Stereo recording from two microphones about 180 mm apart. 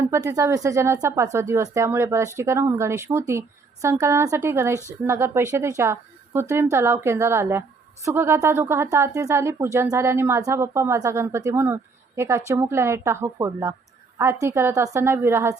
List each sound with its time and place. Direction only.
0.0 s speech: 15° right (ahead or behind)